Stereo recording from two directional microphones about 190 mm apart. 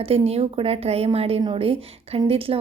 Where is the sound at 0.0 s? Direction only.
30° right (ahead or behind).